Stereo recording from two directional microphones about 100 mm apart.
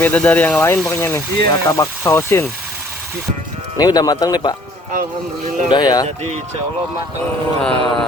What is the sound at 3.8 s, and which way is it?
Speech, 40° left (ahead or behind).